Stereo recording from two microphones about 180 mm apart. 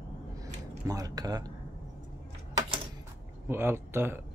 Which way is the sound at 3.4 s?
15° right (ahead or behind).